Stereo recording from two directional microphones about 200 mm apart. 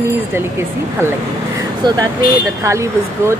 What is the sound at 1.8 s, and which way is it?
Speech, 20° right (ahead or behind).